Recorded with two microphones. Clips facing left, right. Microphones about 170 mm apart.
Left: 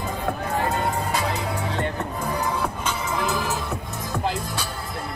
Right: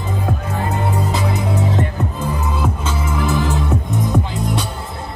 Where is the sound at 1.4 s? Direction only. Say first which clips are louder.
Right 7 dB; 20° right (ahead or behind).